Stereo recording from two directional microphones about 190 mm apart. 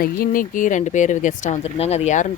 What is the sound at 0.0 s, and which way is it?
Speech, 45° left (ahead or behind).